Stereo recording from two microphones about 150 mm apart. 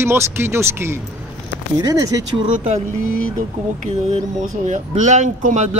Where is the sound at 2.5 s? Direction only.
50° right (ahead or behind).